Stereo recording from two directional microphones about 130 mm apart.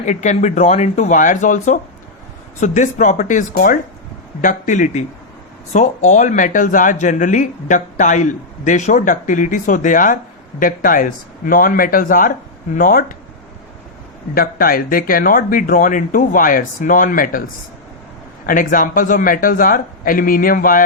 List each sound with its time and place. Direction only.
0.0 s speech: 65° left (ahead or behind); by 13.1 s 90° left
14.6 s speech: 90° left
18.4 s speech: 90° left